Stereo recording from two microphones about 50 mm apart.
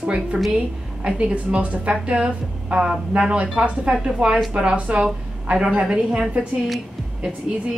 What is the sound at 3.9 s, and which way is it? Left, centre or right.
A woman's voice, centre.